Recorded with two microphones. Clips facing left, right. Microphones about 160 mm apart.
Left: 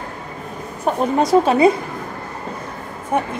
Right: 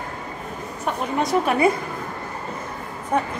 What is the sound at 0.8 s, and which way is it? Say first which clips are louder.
Speech: left 6 dB; 35° left (ahead or behind).